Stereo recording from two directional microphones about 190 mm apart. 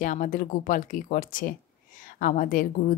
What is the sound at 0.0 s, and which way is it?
A woman's voice, 45° left (ahead or behind).